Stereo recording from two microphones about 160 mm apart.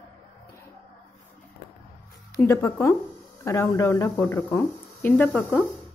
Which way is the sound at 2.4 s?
20° left (ahead or behind).